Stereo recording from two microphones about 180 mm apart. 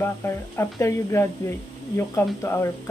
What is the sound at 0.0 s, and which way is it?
Speech, 15° left (ahead or behind).